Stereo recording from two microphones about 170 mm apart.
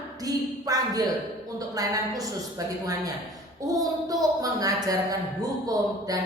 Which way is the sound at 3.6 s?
20° right (ahead or behind).